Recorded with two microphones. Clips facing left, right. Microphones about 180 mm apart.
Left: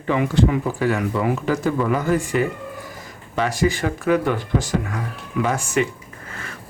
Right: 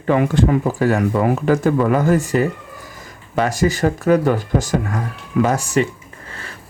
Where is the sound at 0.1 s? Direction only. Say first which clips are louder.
Right 3 dB; 50° right (ahead or behind).